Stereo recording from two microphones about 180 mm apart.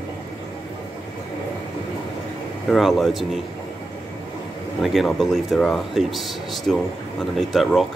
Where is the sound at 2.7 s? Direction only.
Centre (ahead or behind).